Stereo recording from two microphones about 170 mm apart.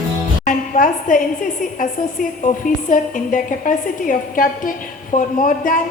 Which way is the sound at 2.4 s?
50° left (ahead or behind).